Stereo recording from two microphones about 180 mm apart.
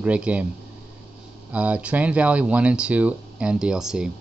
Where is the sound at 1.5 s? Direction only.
5° right (ahead or behind).